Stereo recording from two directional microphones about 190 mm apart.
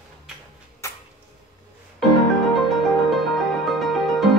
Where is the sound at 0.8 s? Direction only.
15° left (ahead or behind).